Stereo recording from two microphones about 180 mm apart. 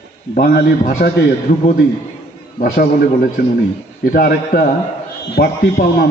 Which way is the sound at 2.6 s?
55° left (ahead or behind).